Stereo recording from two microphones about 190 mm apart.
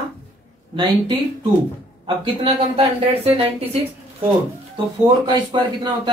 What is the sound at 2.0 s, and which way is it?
Speech, 30° right (ahead or behind).